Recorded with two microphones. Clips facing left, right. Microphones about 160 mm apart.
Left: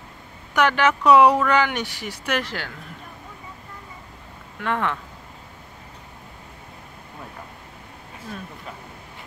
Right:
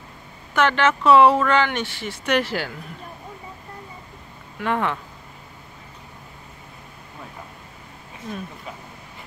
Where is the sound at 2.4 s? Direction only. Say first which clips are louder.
Right 5 dB; 5° right (ahead or behind).